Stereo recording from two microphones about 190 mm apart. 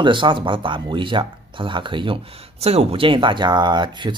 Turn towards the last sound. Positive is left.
turn(degrees=-25)  # may be behind; listen again after turning